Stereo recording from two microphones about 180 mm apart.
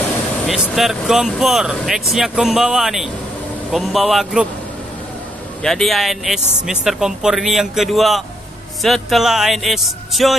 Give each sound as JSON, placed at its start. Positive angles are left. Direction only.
{"t": 0.5, "sound": "speech", "side_deg": 0}
{"t": 5.6, "sound": "speech", "side_deg": 0}